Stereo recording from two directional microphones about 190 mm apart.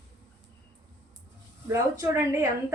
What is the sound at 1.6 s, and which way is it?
A woman's voice, 15° right (ahead or behind).